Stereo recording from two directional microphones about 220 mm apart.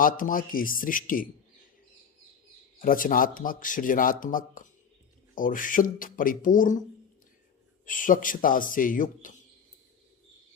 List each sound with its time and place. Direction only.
0.0 s speech: 40° left (ahead or behind)
2.8 s speech: 40° left (ahead or behind)
7.9 s speech: 35° left (ahead or behind)